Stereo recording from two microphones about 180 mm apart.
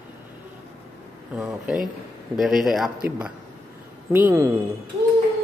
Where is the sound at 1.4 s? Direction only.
Centre (ahead or behind).